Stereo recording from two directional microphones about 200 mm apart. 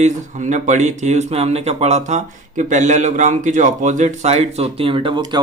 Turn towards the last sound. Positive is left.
turn(degrees=-25)  # may be behind; listen again after turning